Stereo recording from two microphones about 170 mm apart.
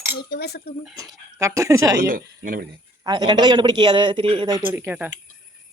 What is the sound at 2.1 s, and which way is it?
Speech, 55° right (ahead or behind).